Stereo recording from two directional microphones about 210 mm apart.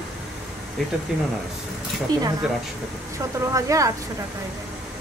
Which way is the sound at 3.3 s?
15° right (ahead or behind).